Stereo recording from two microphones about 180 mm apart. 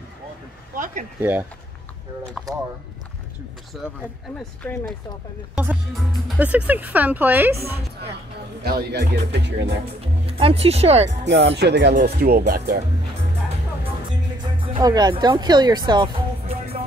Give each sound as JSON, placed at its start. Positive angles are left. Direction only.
{"t": 0.7, "sound": "speech", "side_deg": -50}
{"t": 3.8, "sound": "speech", "side_deg": 0}
{"t": 5.9, "sound": "speech", "side_deg": -5}
{"t": 8.6, "sound": "speech", "side_deg": -60}
{"t": 10.4, "sound": "speech", "side_deg": -35}
{"t": 11.2, "sound": "speech", "side_deg": -75}
{"t": 11.9, "sound": "speech", "side_deg": -50}
{"t": 14.4, "sound": "music", "side_deg": -25}